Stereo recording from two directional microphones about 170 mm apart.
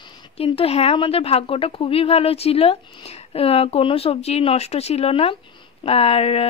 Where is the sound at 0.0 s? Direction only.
30° left (ahead or behind).